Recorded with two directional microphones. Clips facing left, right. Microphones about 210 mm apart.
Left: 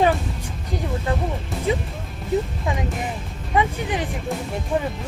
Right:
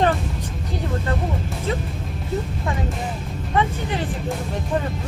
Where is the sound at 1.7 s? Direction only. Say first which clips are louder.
Left 4 dB; 15° left (ahead or behind).